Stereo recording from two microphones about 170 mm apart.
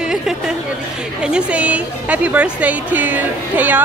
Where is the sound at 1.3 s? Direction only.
10° right (ahead or behind).